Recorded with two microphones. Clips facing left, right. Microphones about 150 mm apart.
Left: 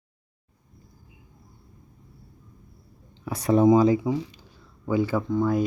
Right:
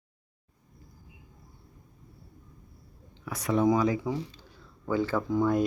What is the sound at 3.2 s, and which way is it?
Speech, 30° left (ahead or behind).